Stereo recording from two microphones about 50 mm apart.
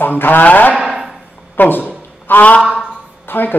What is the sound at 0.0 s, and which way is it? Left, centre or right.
Speech, left.